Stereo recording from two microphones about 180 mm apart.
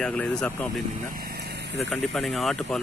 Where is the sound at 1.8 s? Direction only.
Centre (ahead or behind).